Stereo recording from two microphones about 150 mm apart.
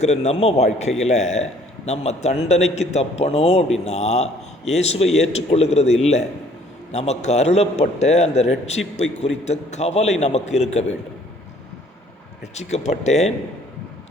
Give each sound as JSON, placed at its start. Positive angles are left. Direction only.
{"t": 0.0, "sound": "a man's voice", "side_deg": 45}
{"t": 12.5, "sound": "a man's voice", "side_deg": 50}